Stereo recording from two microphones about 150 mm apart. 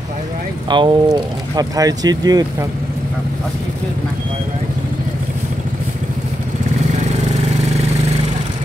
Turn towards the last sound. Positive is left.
turn(degrees=-45)  # may be behind; listen again after turning